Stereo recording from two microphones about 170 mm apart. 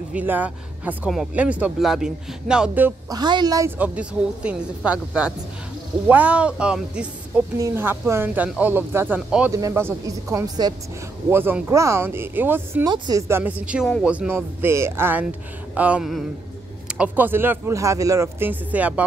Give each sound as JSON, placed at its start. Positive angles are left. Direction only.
{"t": 0.1, "sound": "speech", "side_deg": -10}
{"t": 3.1, "sound": "speech", "side_deg": -25}
{"t": 9.5, "sound": "speech", "side_deg": -20}
{"t": 11.2, "sound": "speech", "side_deg": -10}
{"t": 12.9, "sound": "speech", "side_deg": -25}
{"t": 13.3, "sound": "speech", "side_deg": -10}
{"t": 15.7, "sound": "a sound", "side_deg": -10}
{"t": 16.8, "sound": "speech", "side_deg": -10}